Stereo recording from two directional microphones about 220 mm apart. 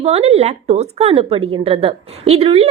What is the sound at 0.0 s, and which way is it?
A woman's voice, 30° right (ahead or behind).